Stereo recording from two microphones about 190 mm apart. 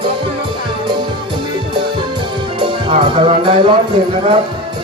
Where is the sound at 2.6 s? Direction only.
25° right (ahead or behind).